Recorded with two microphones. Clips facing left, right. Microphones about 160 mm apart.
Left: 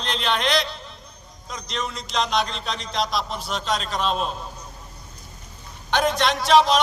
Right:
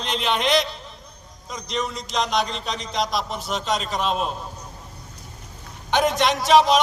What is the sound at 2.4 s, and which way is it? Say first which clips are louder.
Speech: right 1 dB; 10° right (ahead or behind).